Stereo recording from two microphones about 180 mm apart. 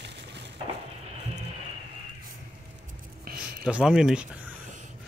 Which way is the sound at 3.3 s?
55° right (ahead or behind).